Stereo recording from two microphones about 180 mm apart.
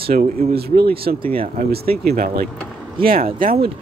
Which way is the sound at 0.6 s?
60° right (ahead or behind).